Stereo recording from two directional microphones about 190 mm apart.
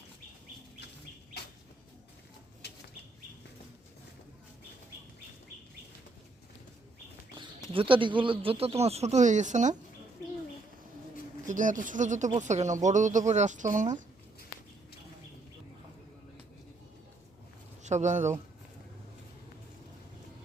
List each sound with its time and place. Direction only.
2.6 s bird flight: 60° left (ahead or behind)
7.7 s speech: 30° right (ahead or behind)
11.4 s speech: 45° right (ahead or behind)
17.8 s speech: 40° right (ahead or behind)